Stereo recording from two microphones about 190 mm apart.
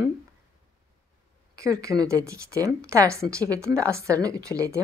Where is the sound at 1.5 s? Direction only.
15° right (ahead or behind).